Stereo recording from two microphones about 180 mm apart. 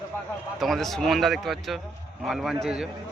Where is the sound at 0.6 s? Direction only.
Centre (ahead or behind).